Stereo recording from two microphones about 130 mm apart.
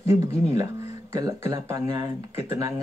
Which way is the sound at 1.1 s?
25° right (ahead or behind).